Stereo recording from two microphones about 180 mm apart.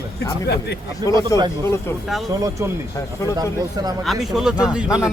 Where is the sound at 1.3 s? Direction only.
15° left (ahead or behind).